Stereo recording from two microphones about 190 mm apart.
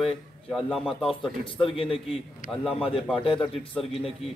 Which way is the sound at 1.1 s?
25° left (ahead or behind).